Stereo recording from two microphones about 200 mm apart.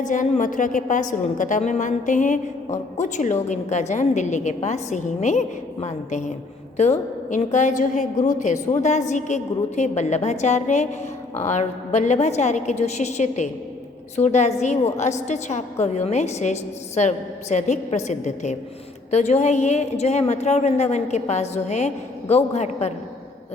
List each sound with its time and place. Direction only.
0.0 s a woman's voice: 40° left (ahead or behind)